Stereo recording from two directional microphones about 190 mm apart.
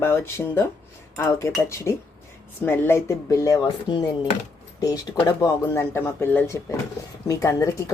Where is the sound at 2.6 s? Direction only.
10° left (ahead or behind).